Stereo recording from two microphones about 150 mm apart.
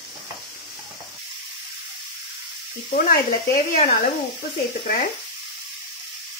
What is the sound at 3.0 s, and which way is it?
Speech, 60° left (ahead or behind).